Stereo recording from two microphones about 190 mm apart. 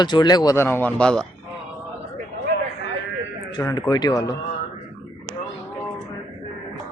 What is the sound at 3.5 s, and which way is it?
Speech, 20° left (ahead or behind).